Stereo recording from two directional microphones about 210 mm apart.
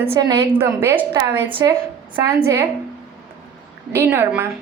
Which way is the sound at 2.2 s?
10° right (ahead or behind).